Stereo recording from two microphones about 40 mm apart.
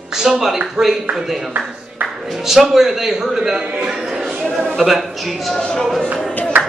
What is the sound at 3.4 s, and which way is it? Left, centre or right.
Speech, right.